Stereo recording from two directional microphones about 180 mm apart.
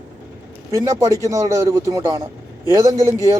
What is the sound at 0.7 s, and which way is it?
A man's voice, 20° right (ahead or behind).